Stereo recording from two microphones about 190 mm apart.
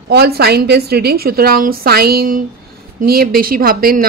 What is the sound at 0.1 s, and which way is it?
A woman's voice, 55° right (ahead or behind).